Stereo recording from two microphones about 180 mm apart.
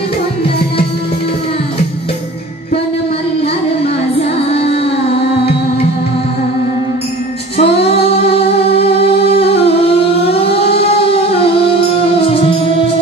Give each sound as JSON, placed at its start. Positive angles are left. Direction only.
{"t": 7.5, "sound": "music", "side_deg": 35}
{"t": 10.8, "sound": "music", "side_deg": 35}